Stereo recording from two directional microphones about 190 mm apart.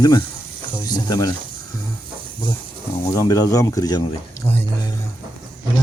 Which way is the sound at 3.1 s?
15° left (ahead or behind).